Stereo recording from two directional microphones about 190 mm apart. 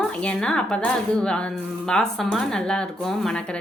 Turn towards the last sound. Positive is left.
turn(degrees=5)  # may be behind; listen again after turning